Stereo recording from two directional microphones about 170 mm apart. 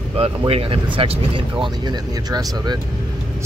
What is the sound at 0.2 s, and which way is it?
Speech, 35° right (ahead or behind).